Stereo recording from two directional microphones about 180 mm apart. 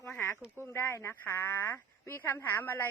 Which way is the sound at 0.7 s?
15° left (ahead or behind).